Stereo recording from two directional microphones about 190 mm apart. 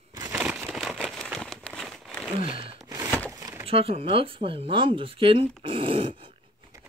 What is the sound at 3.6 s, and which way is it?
Speech, 30° right (ahead or behind).